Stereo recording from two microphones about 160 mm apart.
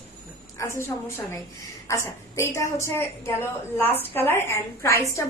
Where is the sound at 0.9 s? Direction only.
15° left (ahead or behind).